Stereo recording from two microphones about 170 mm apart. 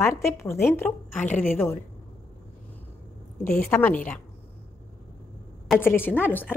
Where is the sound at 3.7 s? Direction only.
10° left (ahead or behind).